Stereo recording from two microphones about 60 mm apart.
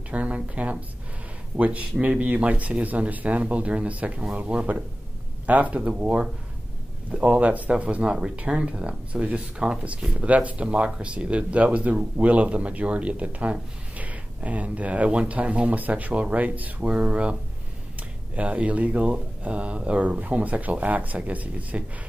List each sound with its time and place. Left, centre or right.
0.1 s speech: right